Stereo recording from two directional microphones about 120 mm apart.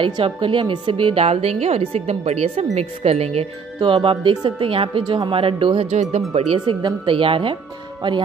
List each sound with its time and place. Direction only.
0.0 s a woman's voice: 45° right (ahead or behind)
3.8 s speech: 45° right (ahead or behind)
5.9 s a woman's voice: 65° right (ahead or behind)
6.8 s speech: 45° right (ahead or behind)